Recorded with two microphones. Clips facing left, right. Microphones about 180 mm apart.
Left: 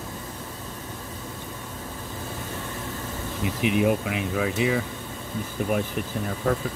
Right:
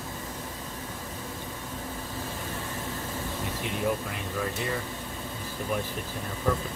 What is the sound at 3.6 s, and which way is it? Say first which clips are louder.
Speech: left 8 dB; 75° left (ahead or behind).